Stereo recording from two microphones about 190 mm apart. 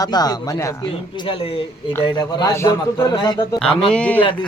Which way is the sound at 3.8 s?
5° left (ahead or behind).